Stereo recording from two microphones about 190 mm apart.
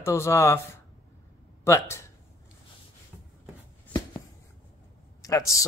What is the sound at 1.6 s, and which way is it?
Speech, 15° left (ahead or behind).